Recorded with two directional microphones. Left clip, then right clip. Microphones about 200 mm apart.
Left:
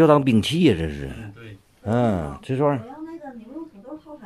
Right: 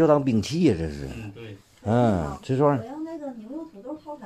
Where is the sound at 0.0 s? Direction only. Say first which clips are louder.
Left 4 dB; 20° left (ahead or behind).